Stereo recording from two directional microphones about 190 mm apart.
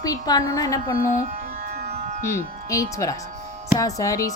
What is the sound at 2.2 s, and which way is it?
Music, 15° left (ahead or behind).